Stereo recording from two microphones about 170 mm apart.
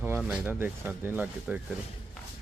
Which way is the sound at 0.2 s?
5° right (ahead or behind).